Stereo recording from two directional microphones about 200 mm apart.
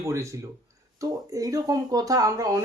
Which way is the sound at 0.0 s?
15° right (ahead or behind).